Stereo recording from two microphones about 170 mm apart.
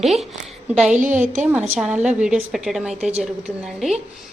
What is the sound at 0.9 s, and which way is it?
Speech, 50° right (ahead or behind).